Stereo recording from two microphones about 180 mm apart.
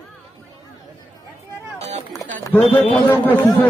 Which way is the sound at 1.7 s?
35° right (ahead or behind).